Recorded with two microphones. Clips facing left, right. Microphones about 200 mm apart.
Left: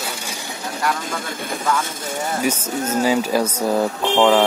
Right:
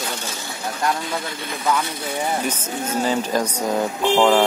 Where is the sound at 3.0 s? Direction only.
10° left (ahead or behind).